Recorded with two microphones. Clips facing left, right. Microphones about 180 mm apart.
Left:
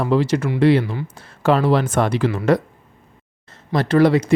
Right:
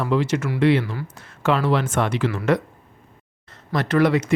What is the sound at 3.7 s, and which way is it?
Speech, 30° left (ahead or behind).